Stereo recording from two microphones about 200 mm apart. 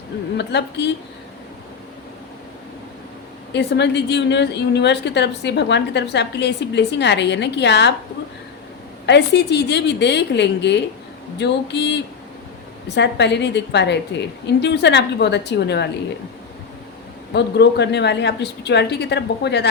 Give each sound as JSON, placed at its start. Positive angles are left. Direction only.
{"t": 0.3, "sound": "a woman's voice", "side_deg": 55}
{"t": 3.5, "sound": "a woman's voice", "side_deg": 60}
{"t": 9.0, "sound": "a woman's voice", "side_deg": 60}
{"t": 17.3, "sound": "a woman's voice", "side_deg": 60}